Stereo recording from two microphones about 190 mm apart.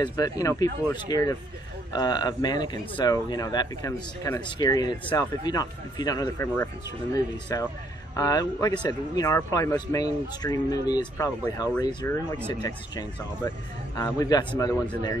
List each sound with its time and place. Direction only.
0.0 s a man's voice: 20° left (ahead or behind)